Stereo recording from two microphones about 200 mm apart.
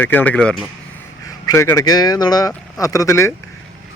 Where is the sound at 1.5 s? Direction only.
15° left (ahead or behind).